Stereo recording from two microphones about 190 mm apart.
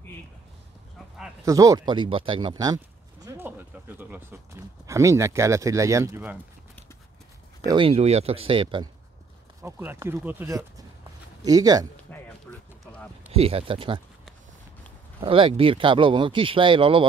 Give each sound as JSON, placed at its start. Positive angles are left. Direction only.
{"t": 1.4, "sound": "speech", "side_deg": -20}
{"t": 7.6, "sound": "speech", "side_deg": -25}
{"t": 9.6, "sound": "speech", "side_deg": -15}
{"t": 12.1, "sound": "a sound", "side_deg": 10}
{"t": 12.5, "sound": "run", "side_deg": 10}
{"t": 12.8, "sound": "a sound", "side_deg": 5}
{"t": 13.3, "sound": "speech", "side_deg": -30}
{"t": 15.1, "sound": "speech", "side_deg": -25}